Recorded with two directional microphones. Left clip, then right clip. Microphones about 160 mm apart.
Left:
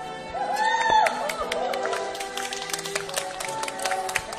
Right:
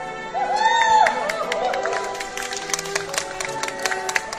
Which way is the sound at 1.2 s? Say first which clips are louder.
Right 4 dB; 65° left (ahead or behind).